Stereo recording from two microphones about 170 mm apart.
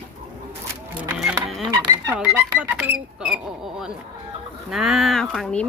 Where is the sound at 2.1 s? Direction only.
10° right (ahead or behind).